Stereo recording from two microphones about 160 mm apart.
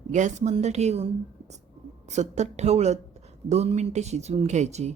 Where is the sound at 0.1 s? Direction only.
50° right (ahead or behind).